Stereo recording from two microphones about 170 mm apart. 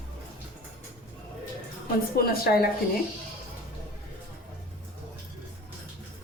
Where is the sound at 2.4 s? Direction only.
60° left (ahead or behind).